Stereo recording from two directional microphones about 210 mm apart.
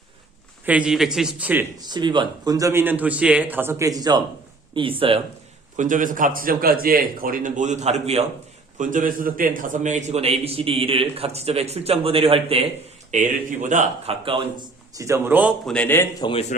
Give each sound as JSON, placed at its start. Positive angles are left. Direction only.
{"t": 0.6, "sound": "speech", "side_deg": -5}
{"t": 1.8, "sound": "a man's voice", "side_deg": -20}
{"t": 5.7, "sound": "a man's voice", "side_deg": -40}
{"t": 15.7, "sound": "speech", "side_deg": 10}
{"t": 16.2, "sound": "speech", "side_deg": 30}